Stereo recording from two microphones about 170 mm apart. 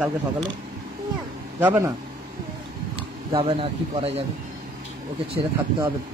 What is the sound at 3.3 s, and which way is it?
Speech, 30° right (ahead or behind).